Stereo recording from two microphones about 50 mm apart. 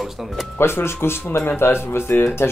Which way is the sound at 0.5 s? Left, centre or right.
Left.